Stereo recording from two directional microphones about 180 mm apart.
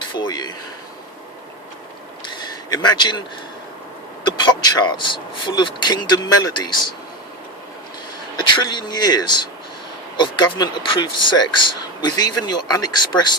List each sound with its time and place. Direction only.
0.1 s speech: 25° left (ahead or behind)
2.3 s a sound: 25° left (ahead or behind)
4.2 s speech: 25° left (ahead or behind)
8.4 s speech: 25° left (ahead or behind)